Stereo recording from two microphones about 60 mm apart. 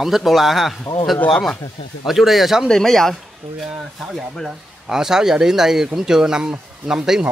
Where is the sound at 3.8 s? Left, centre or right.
Centre.